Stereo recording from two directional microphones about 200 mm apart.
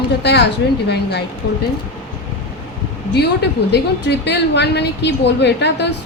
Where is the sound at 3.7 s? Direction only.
60° left (ahead or behind).